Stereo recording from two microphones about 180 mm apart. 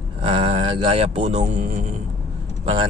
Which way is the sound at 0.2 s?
30° right (ahead or behind).